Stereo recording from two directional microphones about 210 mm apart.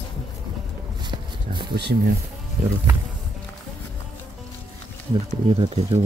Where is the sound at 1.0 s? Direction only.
20° right (ahead or behind).